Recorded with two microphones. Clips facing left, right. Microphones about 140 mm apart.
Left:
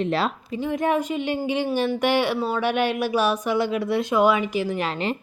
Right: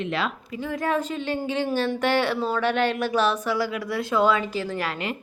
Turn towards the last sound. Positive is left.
turn(degrees=15)  # may be behind; listen again after turning